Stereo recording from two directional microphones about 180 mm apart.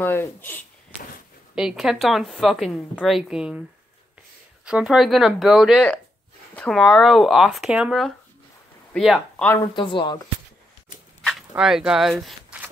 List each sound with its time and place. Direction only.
0.0 s speech: 10° left (ahead or behind)
1.5 s speech: 5° right (ahead or behind)
4.6 s speech: 5° right (ahead or behind)
9.8 s speech: 25° left (ahead or behind)
11.2 s speech: 5° right (ahead or behind)